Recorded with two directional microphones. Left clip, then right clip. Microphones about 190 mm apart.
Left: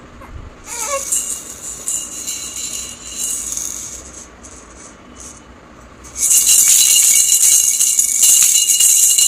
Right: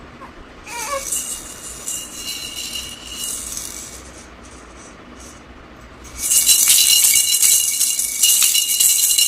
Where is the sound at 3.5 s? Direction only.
15° left (ahead or behind).